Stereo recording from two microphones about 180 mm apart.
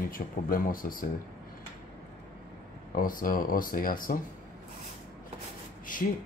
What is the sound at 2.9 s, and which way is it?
Speech, 50° left (ahead or behind).